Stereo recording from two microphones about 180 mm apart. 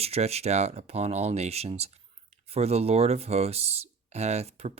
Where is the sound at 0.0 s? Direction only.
35° right (ahead or behind).